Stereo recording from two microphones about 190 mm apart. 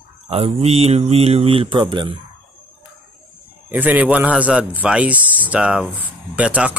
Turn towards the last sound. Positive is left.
turn(degrees=-5)  # may be behind; listen again after turning